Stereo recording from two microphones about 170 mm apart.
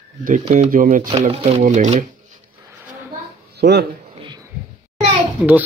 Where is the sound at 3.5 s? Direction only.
75° right (ahead or behind).